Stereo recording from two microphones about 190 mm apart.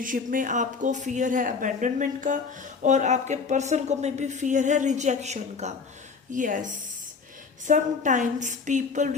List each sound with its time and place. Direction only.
0.0 s speech: 45° right (ahead or behind)